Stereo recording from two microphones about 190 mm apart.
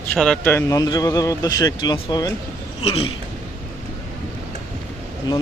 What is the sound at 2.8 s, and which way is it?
Speech, 30° left (ahead or behind).